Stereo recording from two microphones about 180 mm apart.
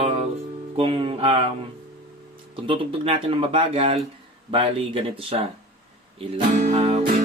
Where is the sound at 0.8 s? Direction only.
30° right (ahead or behind).